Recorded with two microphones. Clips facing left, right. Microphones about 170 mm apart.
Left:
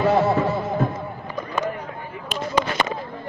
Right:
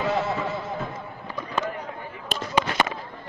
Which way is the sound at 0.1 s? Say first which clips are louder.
Left 7 dB; 55° left (ahead or behind).